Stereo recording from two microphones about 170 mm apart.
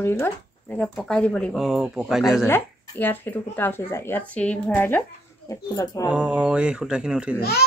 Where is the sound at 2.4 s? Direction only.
10° left (ahead or behind).